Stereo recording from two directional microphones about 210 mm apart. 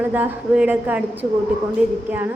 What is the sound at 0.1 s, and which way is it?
A woman's voice, 5° right (ahead or behind).